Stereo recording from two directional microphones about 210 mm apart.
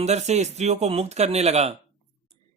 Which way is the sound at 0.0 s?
30° right (ahead or behind).